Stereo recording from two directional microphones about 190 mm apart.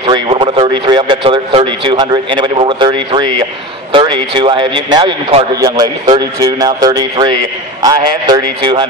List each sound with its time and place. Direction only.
0.0 s a man's voice: 30° right (ahead or behind)